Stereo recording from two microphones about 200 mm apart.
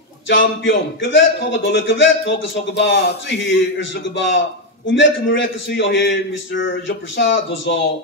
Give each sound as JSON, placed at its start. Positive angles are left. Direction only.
{"t": 0.3, "sound": "a man's voice", "side_deg": 70}